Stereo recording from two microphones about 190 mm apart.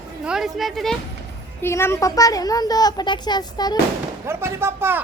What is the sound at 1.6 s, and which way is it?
A woman's voice, 15° left (ahead or behind).